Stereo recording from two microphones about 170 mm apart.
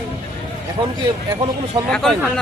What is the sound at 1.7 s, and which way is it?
Speech, 25° right (ahead or behind).